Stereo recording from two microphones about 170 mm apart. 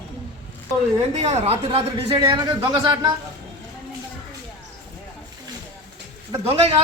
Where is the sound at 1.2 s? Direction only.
35° right (ahead or behind).